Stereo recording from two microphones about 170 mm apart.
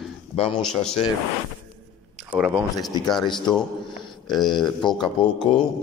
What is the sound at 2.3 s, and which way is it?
Speech, 5° right (ahead or behind).